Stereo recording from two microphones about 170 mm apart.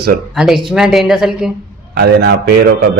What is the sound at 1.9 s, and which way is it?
Speech, 70° right (ahead or behind).